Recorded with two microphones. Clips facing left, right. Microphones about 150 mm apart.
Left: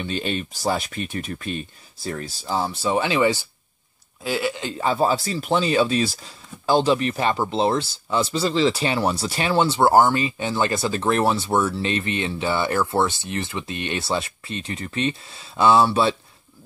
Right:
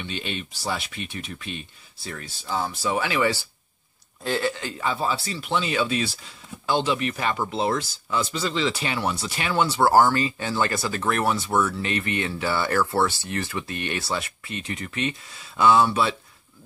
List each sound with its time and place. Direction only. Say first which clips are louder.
0.0 s speech: left 6 dB; 40° left (ahead or behind); by 3.3 s 25° left (ahead or behind)
4.2 s speech: left 1 dB; 10° left (ahead or behind)
4.6 s speech: left 5 dB; 35° left (ahead or behind)